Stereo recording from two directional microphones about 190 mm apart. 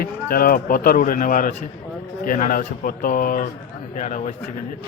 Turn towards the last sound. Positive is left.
turn(degrees=40)  # may be behind; listen again after turning